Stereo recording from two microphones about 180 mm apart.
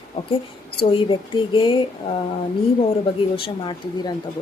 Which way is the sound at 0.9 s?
30° left (ahead or behind).